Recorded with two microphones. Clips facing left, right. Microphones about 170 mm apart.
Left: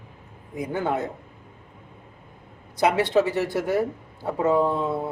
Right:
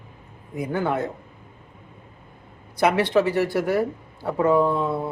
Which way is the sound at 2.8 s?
20° left (ahead or behind).